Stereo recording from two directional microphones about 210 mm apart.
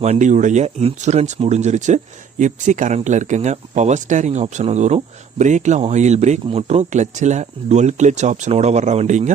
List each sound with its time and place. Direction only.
0.0 s speech: 35° right (ahead or behind)